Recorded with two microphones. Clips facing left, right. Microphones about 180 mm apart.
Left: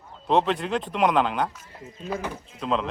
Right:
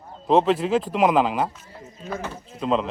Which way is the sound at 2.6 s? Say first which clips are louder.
Right 3 dB; 5° right (ahead or behind).